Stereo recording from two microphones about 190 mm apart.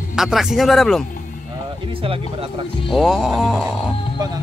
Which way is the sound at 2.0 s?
30° right (ahead or behind).